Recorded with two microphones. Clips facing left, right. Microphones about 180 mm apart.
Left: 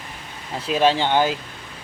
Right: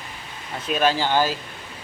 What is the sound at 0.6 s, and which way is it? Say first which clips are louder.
Speech: left 3 dB; 25° left (ahead or behind).